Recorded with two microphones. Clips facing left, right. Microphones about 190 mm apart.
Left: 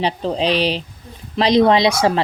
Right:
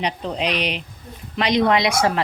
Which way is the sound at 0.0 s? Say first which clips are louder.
Left 5 dB; 30° left (ahead or behind).